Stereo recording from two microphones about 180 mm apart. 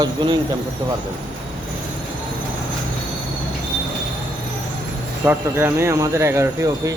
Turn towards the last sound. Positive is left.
turn(degrees=-20)  # may be behind; listen again after turning